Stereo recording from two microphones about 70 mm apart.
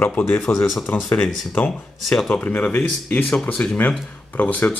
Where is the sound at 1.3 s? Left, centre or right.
Centre.